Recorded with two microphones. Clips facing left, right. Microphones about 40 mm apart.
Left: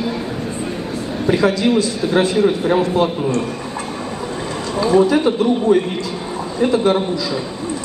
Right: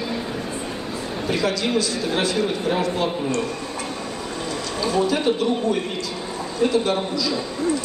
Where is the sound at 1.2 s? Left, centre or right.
Left.